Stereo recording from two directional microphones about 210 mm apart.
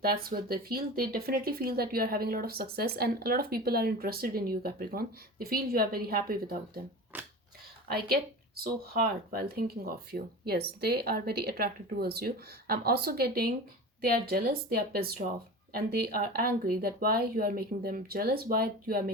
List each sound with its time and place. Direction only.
0.0 s speech: 45° right (ahead or behind)
7.1 s speech: 10° right (ahead or behind)
7.9 s speech: 45° right (ahead or behind)